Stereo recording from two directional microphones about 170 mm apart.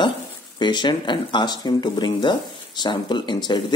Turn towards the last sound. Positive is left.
turn(degrees=25)  # may be behind; listen again after turning